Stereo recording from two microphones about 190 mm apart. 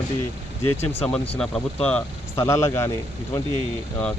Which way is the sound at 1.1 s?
5° left (ahead or behind).